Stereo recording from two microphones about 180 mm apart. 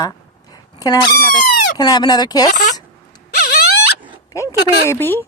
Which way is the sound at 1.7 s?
20° left (ahead or behind).